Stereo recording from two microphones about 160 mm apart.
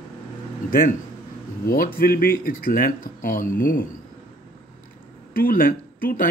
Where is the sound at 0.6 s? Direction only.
60° left (ahead or behind).